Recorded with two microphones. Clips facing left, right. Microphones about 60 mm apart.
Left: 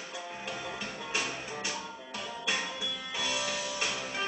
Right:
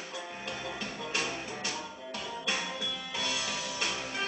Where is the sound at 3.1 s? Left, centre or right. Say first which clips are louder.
Left 2 dB; centre.